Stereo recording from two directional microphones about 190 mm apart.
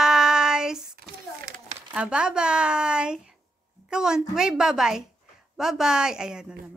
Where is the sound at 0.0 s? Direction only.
5° right (ahead or behind).